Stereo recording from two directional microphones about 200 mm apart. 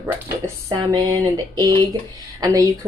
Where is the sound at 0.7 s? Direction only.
20° right (ahead or behind).